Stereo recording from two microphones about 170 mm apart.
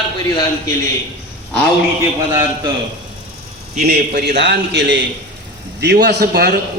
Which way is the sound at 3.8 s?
65° right (ahead or behind).